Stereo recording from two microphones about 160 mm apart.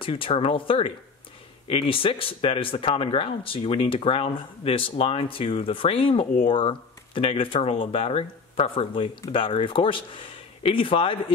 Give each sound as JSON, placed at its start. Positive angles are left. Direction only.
{"t": 0.0, "sound": "speech", "side_deg": 35}